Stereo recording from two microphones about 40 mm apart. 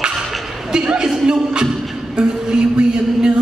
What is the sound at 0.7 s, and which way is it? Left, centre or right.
Music, centre.